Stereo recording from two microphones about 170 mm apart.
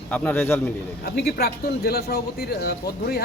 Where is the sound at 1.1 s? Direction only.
70° left (ahead or behind).